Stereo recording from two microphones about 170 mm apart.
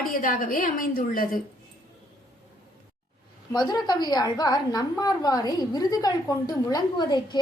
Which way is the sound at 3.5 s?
25° left (ahead or behind).